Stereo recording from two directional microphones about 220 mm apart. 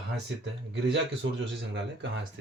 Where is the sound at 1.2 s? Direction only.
55° right (ahead or behind).